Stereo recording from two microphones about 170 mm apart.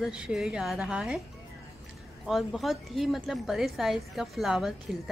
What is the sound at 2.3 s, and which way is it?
A woman's voice, centre (ahead or behind).